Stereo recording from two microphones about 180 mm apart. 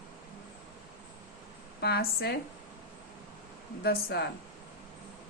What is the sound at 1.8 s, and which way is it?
Speech, 65° left (ahead or behind).